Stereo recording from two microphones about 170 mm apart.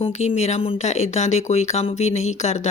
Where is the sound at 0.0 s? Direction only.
35° left (ahead or behind).